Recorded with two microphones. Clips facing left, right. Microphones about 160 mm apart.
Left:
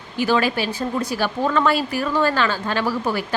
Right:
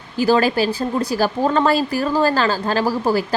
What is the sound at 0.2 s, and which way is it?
Speech, 40° right (ahead or behind).